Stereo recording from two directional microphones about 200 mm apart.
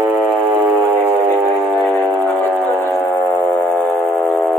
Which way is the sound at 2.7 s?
10° left (ahead or behind).